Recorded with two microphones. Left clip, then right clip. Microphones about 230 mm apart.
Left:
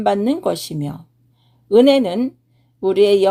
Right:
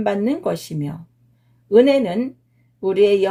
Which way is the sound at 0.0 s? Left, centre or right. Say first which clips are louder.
Left 3 dB; left.